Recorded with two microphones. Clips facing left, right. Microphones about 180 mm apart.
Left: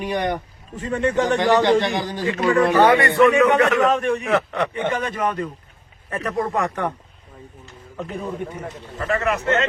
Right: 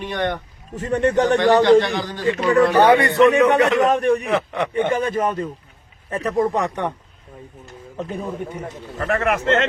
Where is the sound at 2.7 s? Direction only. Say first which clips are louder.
Right 1 dB; 20° right (ahead or behind).